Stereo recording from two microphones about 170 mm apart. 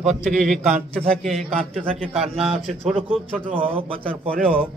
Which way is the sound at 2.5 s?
Centre (ahead or behind).